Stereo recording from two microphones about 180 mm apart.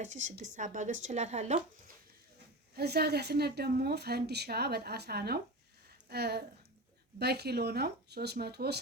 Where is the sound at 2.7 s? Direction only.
60° right (ahead or behind).